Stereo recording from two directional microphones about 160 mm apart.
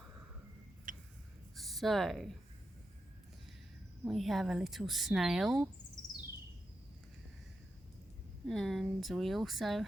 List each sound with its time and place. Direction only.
0.9 s a sound: 55° right (ahead or behind)
1.5 s speech: centre (ahead or behind)
4.0 s speech: centre (ahead or behind)
8.4 s speech: 5° left (ahead or behind)